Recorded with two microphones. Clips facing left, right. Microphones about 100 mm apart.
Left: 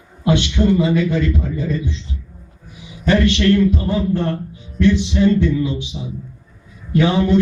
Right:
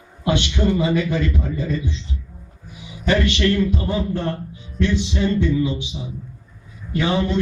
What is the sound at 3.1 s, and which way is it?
A man's voice, 5° right (ahead or behind).